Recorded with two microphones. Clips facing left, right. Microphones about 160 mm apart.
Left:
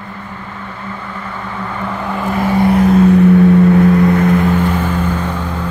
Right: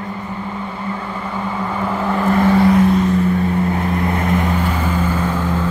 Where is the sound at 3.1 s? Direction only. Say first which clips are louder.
Left 8 dB; 65° left (ahead or behind).